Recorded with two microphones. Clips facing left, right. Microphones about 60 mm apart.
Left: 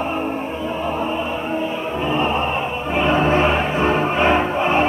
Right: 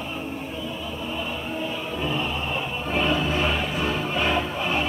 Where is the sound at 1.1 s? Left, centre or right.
Left.